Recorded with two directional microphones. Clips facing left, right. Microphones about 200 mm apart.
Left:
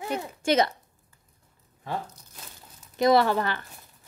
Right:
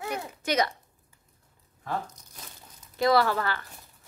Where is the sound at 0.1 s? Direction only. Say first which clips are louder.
Left 5 dB; 30° left (ahead or behind).